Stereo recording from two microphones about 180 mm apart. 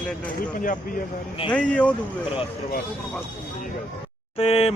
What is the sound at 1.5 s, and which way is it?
Speech, 5° left (ahead or behind).